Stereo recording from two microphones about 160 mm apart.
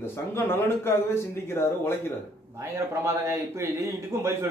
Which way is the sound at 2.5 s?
20° right (ahead or behind).